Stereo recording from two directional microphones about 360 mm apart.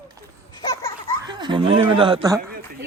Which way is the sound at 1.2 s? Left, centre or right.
Centre.